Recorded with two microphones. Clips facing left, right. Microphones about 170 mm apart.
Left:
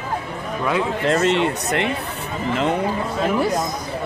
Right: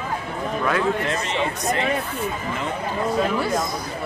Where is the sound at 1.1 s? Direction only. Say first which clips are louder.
Left 7 dB; 70° left (ahead or behind).